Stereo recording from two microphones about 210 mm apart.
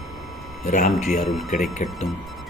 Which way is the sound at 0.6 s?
35° left (ahead or behind).